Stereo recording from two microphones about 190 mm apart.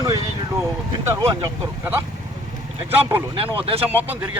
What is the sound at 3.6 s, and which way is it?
Speech, 30° right (ahead or behind).